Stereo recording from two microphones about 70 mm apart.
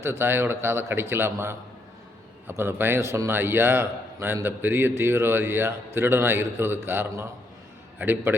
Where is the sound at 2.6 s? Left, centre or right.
Right.